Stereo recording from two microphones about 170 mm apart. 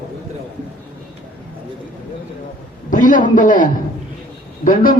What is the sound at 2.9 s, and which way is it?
A man's voice, 50° left (ahead or behind).